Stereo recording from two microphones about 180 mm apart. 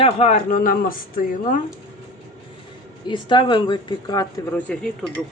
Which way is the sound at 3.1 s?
25° left (ahead or behind).